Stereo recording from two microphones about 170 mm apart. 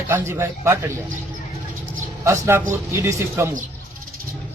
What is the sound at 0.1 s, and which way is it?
Speech, 15° right (ahead or behind).